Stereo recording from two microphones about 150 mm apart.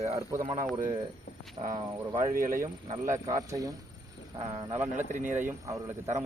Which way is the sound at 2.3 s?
65° right (ahead or behind).